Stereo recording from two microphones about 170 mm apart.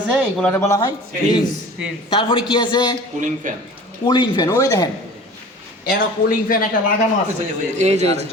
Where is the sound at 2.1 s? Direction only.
30° left (ahead or behind).